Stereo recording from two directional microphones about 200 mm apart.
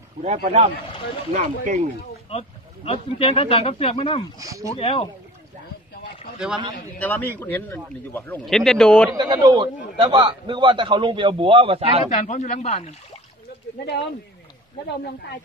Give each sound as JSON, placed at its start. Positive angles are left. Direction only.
{"t": 0.2, "sound": "speech", "side_deg": -35}
{"t": 2.2, "sound": "speech", "side_deg": 30}
{"t": 4.4, "sound": "speech", "side_deg": -15}
{"t": 4.7, "sound": "speech", "side_deg": 30}
{"t": 7.0, "sound": "a man's voice", "side_deg": 10}
{"t": 9.1, "sound": "a man's voice", "side_deg": -20}
{"t": 12.1, "sound": "speech", "side_deg": 35}